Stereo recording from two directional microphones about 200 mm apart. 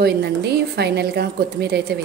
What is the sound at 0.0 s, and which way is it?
A woman's voice, 55° right (ahead or behind).